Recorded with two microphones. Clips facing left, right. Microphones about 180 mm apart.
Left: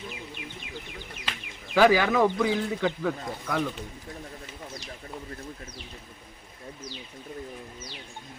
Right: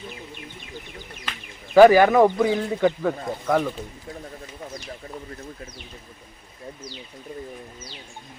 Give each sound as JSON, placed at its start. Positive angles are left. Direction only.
{"t": 1.7, "sound": "speech", "side_deg": -50}